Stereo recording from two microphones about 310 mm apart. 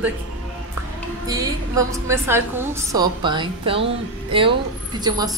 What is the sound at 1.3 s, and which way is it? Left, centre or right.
A woman's voice, centre.